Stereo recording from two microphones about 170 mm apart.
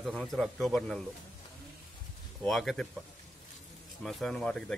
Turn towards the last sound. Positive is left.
turn(degrees=5)  # may be behind; listen again after turning